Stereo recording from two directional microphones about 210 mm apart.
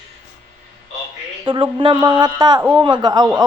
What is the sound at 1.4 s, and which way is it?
Speech, 25° right (ahead or behind).